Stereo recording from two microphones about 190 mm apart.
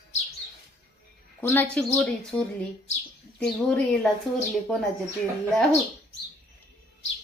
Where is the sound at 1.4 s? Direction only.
10° left (ahead or behind).